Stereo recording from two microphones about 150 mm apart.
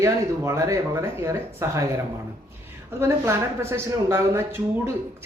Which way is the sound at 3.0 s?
15° right (ahead or behind).